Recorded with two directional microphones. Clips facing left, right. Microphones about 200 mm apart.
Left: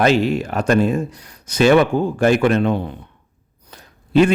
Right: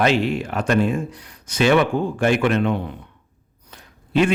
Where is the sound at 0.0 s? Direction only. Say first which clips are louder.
Left 3 dB; 40° left (ahead or behind).